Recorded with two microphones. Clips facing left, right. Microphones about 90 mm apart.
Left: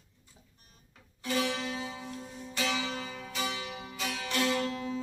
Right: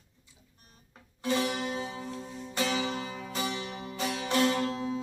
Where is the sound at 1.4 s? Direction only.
35° right (ahead or behind).